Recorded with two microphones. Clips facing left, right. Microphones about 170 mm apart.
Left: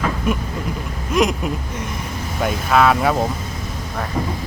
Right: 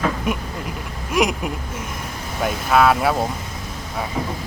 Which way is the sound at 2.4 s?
Centre (ahead or behind).